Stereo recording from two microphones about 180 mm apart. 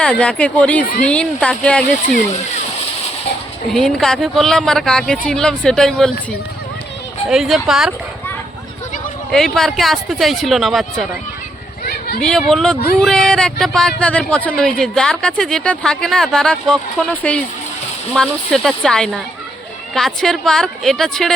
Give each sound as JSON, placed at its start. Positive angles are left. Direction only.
{"t": 0.0, "sound": "speech", "side_deg": 5}
{"t": 3.7, "sound": "speech", "side_deg": 5}
{"t": 7.3, "sound": "speech", "side_deg": 0}
{"t": 9.3, "sound": "speech", "side_deg": 5}
{"t": 11.9, "sound": "a sound", "side_deg": 55}
{"t": 12.2, "sound": "speech", "side_deg": 5}